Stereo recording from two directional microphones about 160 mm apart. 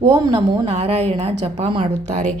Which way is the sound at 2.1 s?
50° right (ahead or behind).